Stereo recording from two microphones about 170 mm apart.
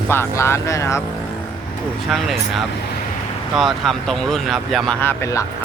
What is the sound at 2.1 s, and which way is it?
Speech, centre (ahead or behind).